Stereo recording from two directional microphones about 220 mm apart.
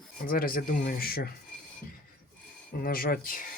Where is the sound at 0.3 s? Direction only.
40° left (ahead or behind).